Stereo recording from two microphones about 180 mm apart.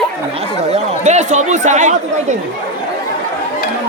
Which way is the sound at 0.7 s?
40° right (ahead or behind).